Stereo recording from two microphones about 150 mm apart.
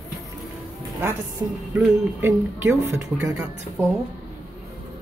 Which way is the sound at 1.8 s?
15° right (ahead or behind).